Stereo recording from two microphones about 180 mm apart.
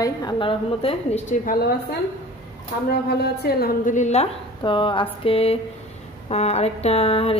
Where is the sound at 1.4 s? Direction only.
55° left (ahead or behind).